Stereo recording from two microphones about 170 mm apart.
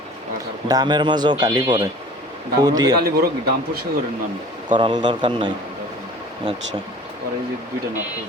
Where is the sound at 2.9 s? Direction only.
70° right (ahead or behind).